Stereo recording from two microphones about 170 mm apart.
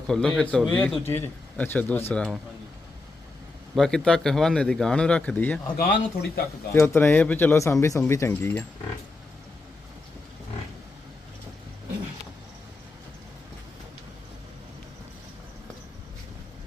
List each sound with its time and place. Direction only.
0.1 s speech: 5° left (ahead or behind)
3.8 s speech: 5° left (ahead or behind)
5.7 s speech: 70° left (ahead or behind)
6.7 s speech: 15° left (ahead or behind)